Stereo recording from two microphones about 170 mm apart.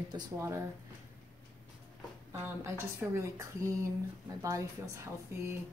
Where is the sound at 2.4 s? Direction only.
15° right (ahead or behind).